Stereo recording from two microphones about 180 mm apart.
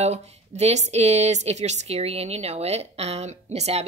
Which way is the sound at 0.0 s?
35° right (ahead or behind).